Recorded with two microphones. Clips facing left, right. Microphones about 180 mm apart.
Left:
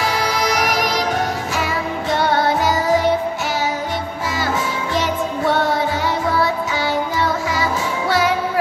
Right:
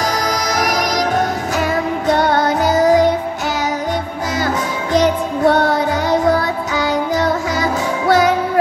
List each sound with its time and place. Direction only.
0.0 s music: 45° right (ahead or behind)
4.9 s music: 45° right (ahead or behind)